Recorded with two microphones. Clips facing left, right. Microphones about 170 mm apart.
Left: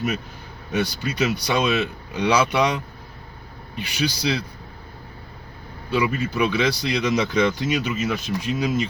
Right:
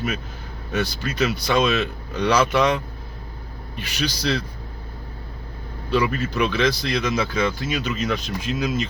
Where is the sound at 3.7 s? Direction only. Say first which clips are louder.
Left 2 dB; 10° left (ahead or behind).